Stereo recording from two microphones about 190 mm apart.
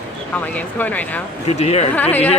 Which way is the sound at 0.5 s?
10° left (ahead or behind).